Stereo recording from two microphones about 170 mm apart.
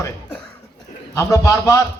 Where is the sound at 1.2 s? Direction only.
20° left (ahead or behind).